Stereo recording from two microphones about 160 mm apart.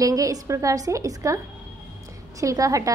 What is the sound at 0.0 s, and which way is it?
A woman's voice, 20° right (ahead or behind).